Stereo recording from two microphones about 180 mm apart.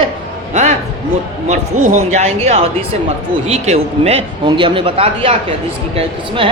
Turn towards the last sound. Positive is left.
turn(degrees=-30)  # may be behind; listen again after turning